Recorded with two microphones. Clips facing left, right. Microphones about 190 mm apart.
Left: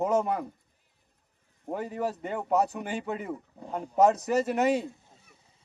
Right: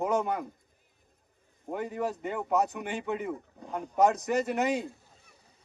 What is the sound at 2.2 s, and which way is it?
Speech, 35° left (ahead or behind).